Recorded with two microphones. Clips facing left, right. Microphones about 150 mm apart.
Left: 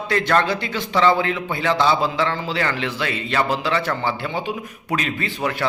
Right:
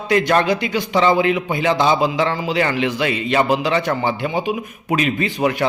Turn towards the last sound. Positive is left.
turn(degrees=-20)  # may be behind; listen again after turning